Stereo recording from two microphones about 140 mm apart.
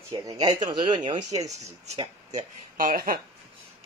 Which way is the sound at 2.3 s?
90° right.